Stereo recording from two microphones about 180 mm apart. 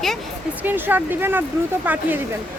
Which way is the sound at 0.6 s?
10° right (ahead or behind).